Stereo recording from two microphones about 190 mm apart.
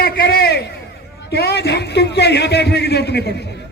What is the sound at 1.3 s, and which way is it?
A man's voice, 60° left (ahead or behind).